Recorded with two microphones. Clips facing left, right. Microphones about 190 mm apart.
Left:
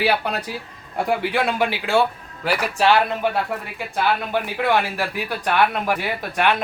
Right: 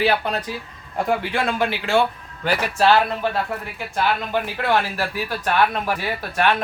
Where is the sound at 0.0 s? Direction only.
10° left (ahead or behind).